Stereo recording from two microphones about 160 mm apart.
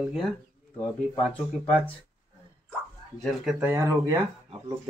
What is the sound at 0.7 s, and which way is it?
Speech, 5° left (ahead or behind).